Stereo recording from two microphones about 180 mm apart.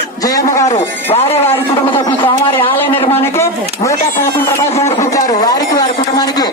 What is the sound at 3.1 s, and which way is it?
Speech, 15° left (ahead or behind).